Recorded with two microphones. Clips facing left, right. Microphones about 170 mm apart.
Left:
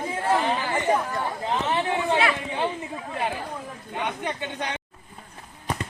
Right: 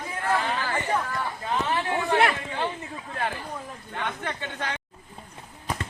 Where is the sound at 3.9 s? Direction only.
15° left (ahead or behind).